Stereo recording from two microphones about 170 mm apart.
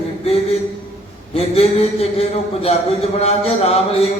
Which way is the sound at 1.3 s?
40° left (ahead or behind).